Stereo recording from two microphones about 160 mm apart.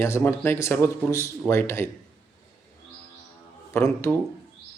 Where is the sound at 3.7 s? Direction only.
15° left (ahead or behind).